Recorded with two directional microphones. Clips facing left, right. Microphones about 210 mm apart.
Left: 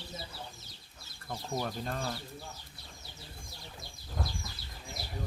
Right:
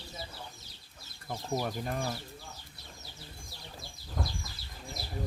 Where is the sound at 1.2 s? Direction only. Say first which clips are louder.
Right 2 dB; 10° right (ahead or behind).